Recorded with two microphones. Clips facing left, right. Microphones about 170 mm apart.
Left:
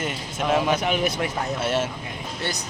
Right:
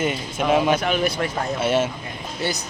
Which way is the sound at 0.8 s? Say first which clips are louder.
Right 2 dB; 20° left (ahead or behind).